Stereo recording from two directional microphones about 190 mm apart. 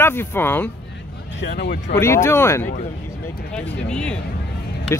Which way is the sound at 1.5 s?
55° left (ahead or behind).